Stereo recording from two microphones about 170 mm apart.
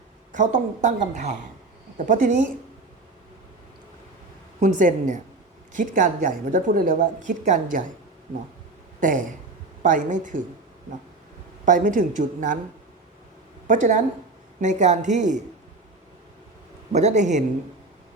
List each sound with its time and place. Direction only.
0.3 s a woman's voice: 45° right (ahead or behind)
4.6 s a woman's voice: 50° right (ahead or behind)
9.0 s a sound: 50° right (ahead or behind)
9.8 s a woman's voice: 50° right (ahead or behind)
11.6 s a woman's voice: 50° right (ahead or behind)
13.7 s a woman's voice: 50° right (ahead or behind)
16.9 s a woman's voice: 40° right (ahead or behind)